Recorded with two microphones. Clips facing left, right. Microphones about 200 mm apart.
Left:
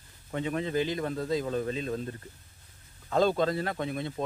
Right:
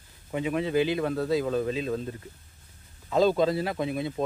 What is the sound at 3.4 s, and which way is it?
Speech, 10° right (ahead or behind).